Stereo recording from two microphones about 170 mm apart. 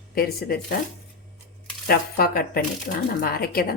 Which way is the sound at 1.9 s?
60° left (ahead or behind).